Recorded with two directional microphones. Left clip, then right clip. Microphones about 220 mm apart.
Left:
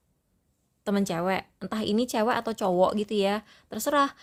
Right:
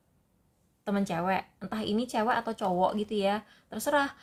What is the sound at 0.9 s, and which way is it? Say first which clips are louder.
Speech: left 3 dB; 40° left (ahead or behind).